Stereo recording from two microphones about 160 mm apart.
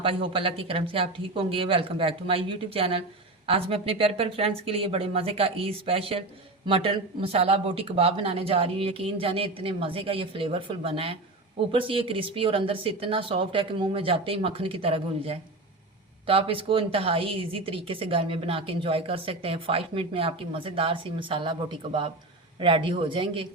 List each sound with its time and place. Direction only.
0.0 s a woman's voice: 35° right (ahead or behind)